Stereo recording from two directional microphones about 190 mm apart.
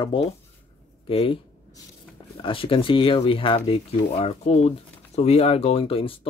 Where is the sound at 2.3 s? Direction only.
25° left (ahead or behind).